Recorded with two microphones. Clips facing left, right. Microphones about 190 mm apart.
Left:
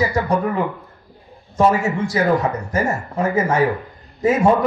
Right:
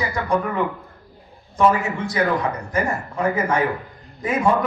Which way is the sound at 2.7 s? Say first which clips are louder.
Left 2 dB; 40° left (ahead or behind).